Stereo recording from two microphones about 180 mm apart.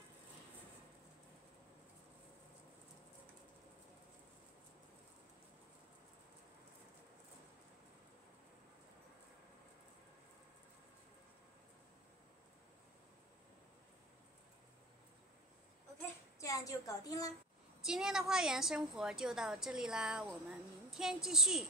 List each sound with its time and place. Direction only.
16.3 s a woman's voice: 20° left (ahead or behind)
17.8 s a woman's voice: 5° right (ahead or behind)